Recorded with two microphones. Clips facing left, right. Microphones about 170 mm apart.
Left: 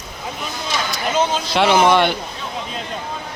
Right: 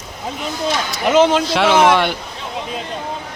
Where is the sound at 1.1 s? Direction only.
85° right.